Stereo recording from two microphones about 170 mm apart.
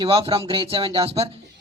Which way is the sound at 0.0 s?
30° right (ahead or behind).